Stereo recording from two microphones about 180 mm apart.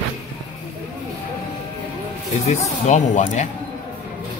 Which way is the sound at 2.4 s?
40° left (ahead or behind).